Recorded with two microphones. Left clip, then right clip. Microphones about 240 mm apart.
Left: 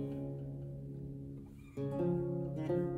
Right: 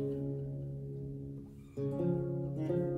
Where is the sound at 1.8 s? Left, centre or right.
Left.